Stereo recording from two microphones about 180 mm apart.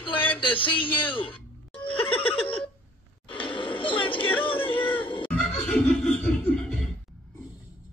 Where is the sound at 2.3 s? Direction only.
30° left (ahead or behind).